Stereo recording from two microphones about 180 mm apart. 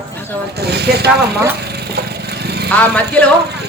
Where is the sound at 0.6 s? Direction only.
65° right (ahead or behind).